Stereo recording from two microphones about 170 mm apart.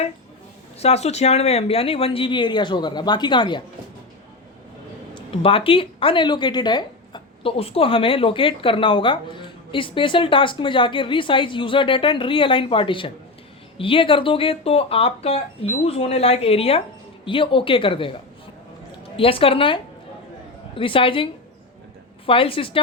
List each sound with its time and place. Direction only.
0.8 s speech: 40° left (ahead or behind)
5.1 s speech: 35° left (ahead or behind)
19.1 s speech: 35° left (ahead or behind)
22.3 s speech: 30° left (ahead or behind)